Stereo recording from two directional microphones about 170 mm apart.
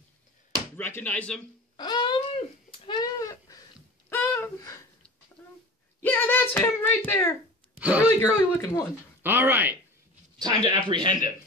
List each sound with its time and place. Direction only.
0.7 s speech: 15° left (ahead or behind)
1.8 s a sound: 25° left (ahead or behind)
6.0 s speech: 10° left (ahead or behind)
7.8 s speech: 10° right (ahead or behind)
8.2 s speech: 15° left (ahead or behind)
9.2 s speech: 10° right (ahead or behind)
10.4 s speech: 25° right (ahead or behind)